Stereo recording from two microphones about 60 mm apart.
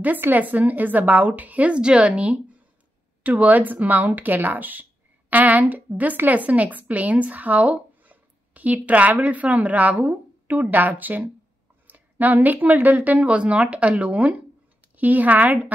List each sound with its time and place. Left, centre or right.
0.0 s a woman's voice: right